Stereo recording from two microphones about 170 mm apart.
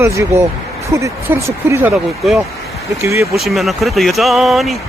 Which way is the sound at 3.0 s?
15° right (ahead or behind).